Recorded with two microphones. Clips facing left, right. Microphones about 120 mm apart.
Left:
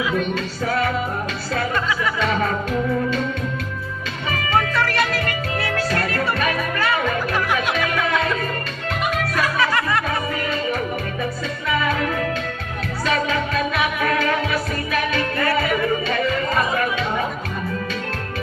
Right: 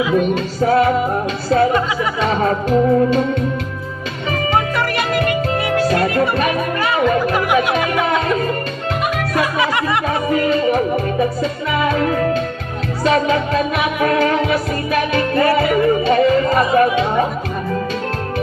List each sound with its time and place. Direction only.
0.3 s music: 25° right (ahead or behind)
4.5 s music: 15° right (ahead or behind)
9.3 s music: 20° right (ahead or behind)
11.7 s music: 30° right (ahead or behind)